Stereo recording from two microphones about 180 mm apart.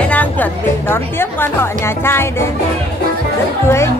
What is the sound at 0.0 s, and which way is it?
A woman's voice, 10° left (ahead or behind).